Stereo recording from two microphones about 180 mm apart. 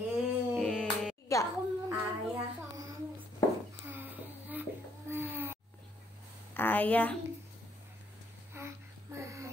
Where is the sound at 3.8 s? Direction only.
10° right (ahead or behind).